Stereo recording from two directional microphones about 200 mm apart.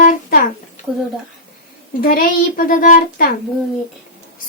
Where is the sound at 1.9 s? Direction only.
45° left (ahead or behind).